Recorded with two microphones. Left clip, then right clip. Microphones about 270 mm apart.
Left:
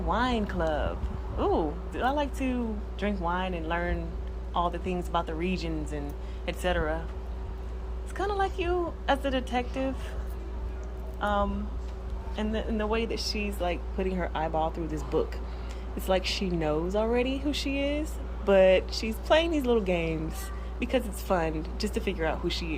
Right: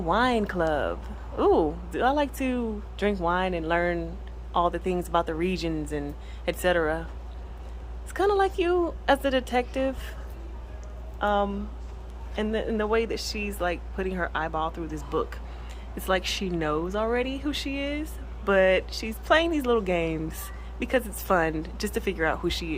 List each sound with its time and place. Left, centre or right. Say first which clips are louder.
0.1 s speech: right 5 dB; centre
8.1 s speech: right 6 dB; right
11.2 s speech: right 3 dB; right